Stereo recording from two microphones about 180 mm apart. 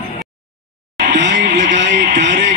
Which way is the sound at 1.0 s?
80° right.